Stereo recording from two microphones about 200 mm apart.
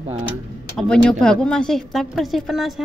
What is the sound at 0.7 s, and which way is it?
A woman's voice, 5° left (ahead or behind).